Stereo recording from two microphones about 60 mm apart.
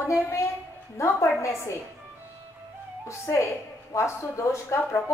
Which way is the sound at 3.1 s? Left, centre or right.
Left.